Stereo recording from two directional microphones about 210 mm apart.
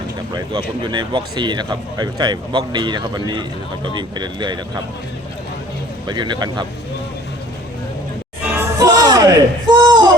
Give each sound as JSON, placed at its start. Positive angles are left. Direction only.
{"t": 0.3, "sound": "speech", "side_deg": -20}
{"t": 6.1, "sound": "speech", "side_deg": -20}
{"t": 8.4, "sound": "music", "side_deg": -15}